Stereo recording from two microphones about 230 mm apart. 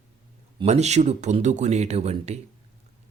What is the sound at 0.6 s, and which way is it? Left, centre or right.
Speech, right.